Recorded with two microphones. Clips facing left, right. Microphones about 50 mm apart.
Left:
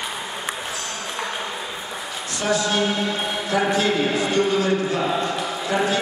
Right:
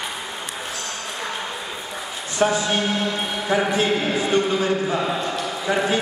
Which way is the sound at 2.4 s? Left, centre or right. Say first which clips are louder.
Right 1 dB; right.